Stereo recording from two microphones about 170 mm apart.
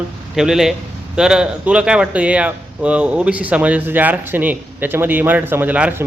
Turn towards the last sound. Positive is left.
turn(degrees=-10)  # may be behind; listen again after turning